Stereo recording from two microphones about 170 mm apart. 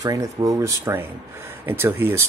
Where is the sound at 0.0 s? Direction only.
20° right (ahead or behind).